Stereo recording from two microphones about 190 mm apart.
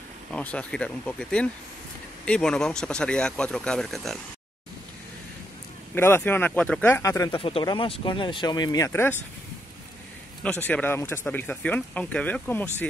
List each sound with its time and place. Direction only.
0.3 s speech: 5° left (ahead or behind)
5.9 s speech: 10° left (ahead or behind)
10.4 s speech: 10° left (ahead or behind)